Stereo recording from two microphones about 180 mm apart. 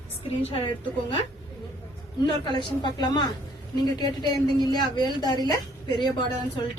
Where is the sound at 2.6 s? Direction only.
25° left (ahead or behind).